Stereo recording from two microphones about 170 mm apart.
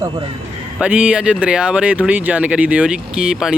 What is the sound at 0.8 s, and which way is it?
Speech, 5° right (ahead or behind).